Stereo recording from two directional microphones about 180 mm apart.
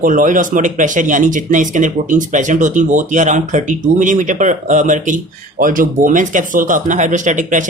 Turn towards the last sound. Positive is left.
turn(degrees=-45)  # may be behind; listen again after turning